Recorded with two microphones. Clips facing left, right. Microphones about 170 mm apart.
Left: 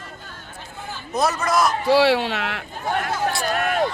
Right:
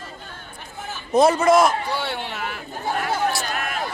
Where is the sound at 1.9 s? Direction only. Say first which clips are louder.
Left 11 dB; 85° left.